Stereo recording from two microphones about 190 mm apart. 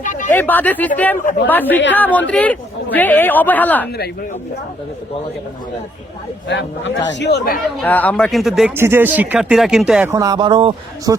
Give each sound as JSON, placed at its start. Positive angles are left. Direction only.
{"t": 0.0, "sound": "a sound", "side_deg": 40}
{"t": 0.3, "sound": "speech", "side_deg": 10}
{"t": 6.5, "sound": "a man's voice", "side_deg": 70}
{"t": 7.8, "sound": "speech", "side_deg": 10}
{"t": 8.7, "sound": "speech", "side_deg": -10}
{"t": 10.2, "sound": "speech", "side_deg": -20}